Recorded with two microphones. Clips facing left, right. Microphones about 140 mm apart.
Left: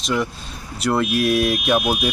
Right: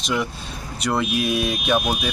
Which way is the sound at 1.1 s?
70° left (ahead or behind).